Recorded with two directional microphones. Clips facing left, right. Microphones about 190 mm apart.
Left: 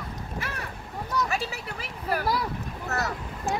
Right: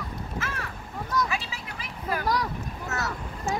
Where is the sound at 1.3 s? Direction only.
40° left (ahead or behind).